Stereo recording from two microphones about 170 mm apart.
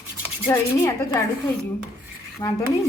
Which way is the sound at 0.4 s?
15° left (ahead or behind).